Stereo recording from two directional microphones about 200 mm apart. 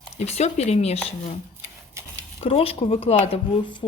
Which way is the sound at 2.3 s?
30° left (ahead or behind).